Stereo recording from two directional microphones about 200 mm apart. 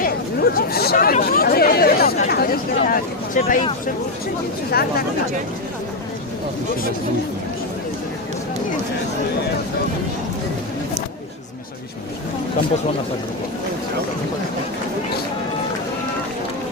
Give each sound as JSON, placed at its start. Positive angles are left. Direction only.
{"t": 0.0, "sound": "speech", "side_deg": 50}
{"t": 4.7, "sound": "speech", "side_deg": 50}